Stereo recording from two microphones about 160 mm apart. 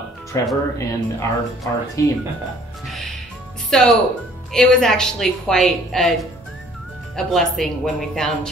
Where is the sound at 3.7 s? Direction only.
5° left (ahead or behind).